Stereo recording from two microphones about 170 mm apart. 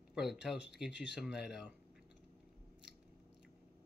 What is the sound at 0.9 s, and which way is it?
Speech, 90° left.